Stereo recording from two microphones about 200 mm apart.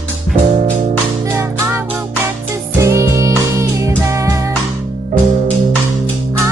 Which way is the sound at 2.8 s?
15° right (ahead or behind).